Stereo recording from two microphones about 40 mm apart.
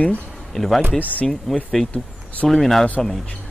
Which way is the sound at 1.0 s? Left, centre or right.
Left.